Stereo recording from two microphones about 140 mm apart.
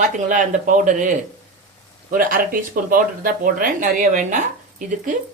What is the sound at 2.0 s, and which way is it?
Speech, 90° right.